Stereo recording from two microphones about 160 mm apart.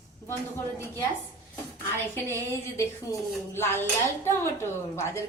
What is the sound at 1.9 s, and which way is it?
A woman's voice, 15° left (ahead or behind).